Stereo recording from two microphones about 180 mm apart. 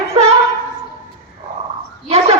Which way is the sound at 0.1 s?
35° right (ahead or behind).